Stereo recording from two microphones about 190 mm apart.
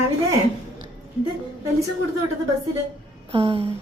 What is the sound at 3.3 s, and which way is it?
Speech, 30° right (ahead or behind).